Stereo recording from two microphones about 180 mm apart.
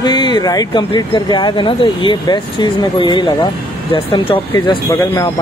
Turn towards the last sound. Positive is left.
turn(degrees=15)  # may be behind; listen again after turning